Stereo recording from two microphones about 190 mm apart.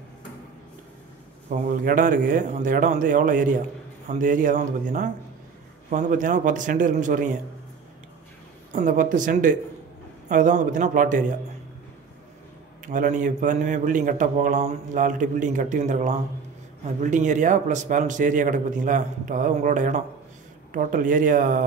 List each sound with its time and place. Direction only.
1.5 s a man's voice: 50° right (ahead or behind)
8.7 s a man's voice: 40° right (ahead or behind)
12.8 s a man's voice: 45° right (ahead or behind)